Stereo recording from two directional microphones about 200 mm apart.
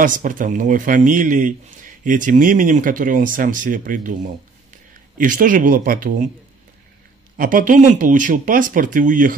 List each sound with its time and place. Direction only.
0.0 s a man's voice: 40° right (ahead or behind)
7.3 s a man's voice: 45° right (ahead or behind)